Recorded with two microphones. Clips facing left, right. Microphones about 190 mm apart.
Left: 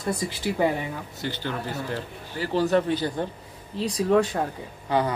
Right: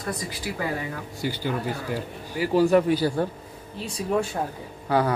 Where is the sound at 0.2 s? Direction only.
25° left (ahead or behind).